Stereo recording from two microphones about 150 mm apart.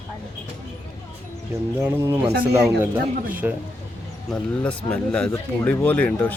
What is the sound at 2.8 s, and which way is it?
Speech, 10° right (ahead or behind).